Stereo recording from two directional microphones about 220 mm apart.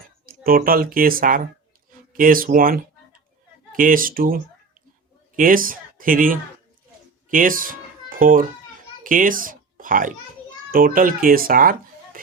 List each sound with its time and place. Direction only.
0.3 s speech: 40° right (ahead or behind)